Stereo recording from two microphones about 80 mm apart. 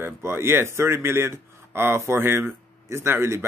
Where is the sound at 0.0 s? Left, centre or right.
Right.